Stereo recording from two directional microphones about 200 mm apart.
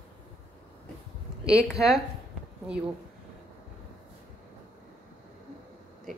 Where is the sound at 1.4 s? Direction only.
5° right (ahead or behind).